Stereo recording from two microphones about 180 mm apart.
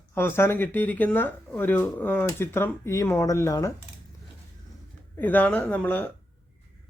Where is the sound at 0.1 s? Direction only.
15° left (ahead or behind).